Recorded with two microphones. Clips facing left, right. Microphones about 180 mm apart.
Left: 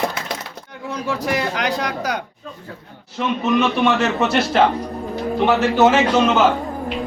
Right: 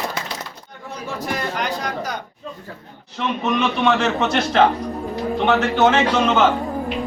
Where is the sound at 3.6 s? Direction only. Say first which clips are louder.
Right 1 dB; 5° left (ahead or behind).